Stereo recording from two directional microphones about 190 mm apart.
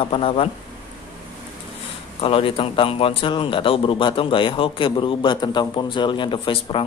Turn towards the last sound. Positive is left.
turn(degrees=25)  # may be behind; listen again after turning